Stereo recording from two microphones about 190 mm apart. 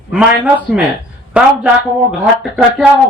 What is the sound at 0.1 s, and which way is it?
A man's voice, 5° right (ahead or behind).